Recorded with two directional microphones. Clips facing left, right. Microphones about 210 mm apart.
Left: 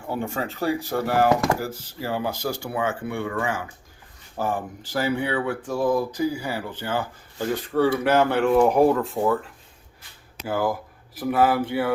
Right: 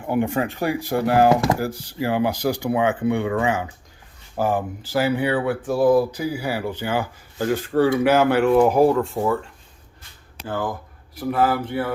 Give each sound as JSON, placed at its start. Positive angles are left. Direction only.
{"t": 0.1, "sound": "speech", "side_deg": -15}
{"t": 4.4, "sound": "speech", "side_deg": -10}
{"t": 10.4, "sound": "speech", "side_deg": 10}